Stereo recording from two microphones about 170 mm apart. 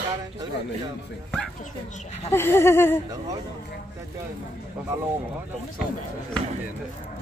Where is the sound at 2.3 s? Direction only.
15° left (ahead or behind).